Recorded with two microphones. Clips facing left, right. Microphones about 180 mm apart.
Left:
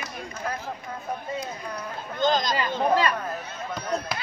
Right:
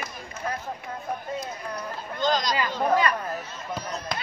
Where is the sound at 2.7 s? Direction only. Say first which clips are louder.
Left 1 dB; 25° left (ahead or behind).